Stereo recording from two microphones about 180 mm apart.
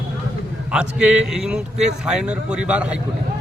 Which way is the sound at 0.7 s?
5° right (ahead or behind).